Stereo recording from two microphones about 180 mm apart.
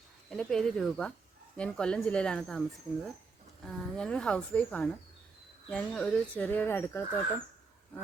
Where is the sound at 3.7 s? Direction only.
5° left (ahead or behind).